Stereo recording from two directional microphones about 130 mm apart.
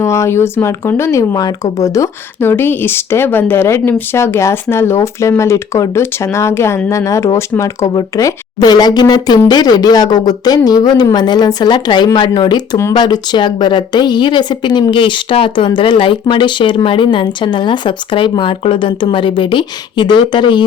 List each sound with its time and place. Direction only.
0.0 s speech: 20° left (ahead or behind); by 20.7 s 35° left (ahead or behind)